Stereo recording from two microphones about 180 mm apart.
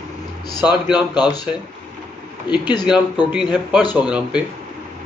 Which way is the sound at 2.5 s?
25° left (ahead or behind).